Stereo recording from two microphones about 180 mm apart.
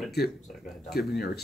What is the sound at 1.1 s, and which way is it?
Speech, 60° left (ahead or behind).